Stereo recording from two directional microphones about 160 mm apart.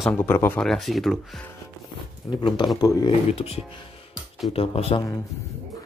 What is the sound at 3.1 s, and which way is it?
Speech, 40° left (ahead or behind).